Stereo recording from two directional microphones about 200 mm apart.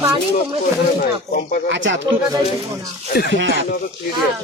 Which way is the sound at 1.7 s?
65° right (ahead or behind).